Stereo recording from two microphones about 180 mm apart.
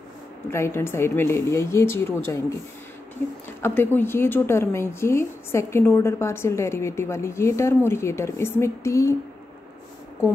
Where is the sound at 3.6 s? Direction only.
10° left (ahead or behind).